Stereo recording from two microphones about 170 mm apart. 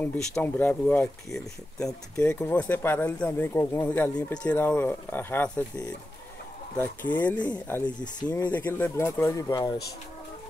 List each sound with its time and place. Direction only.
0.0 s speech: 5° left (ahead or behind)
7.2 s speech: 10° left (ahead or behind)